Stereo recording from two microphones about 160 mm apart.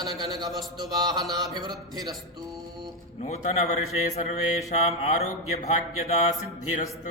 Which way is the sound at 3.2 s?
45° left (ahead or behind).